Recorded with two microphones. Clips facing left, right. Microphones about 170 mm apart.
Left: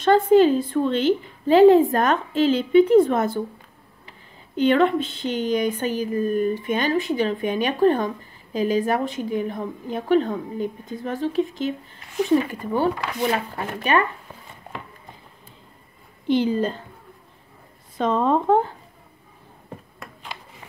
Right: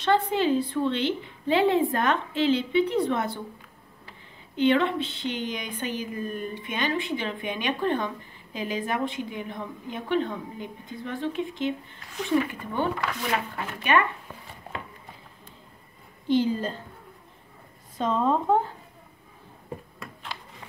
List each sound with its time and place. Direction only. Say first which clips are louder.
0.0 s speech: left 8 dB; 45° left (ahead or behind)
4.6 s speech: left 4 dB; 45° left (ahead or behind)
16.3 s speech: left 3 dB; 70° left (ahead or behind)
17.9 s speech: left 4 dB; 70° left (ahead or behind)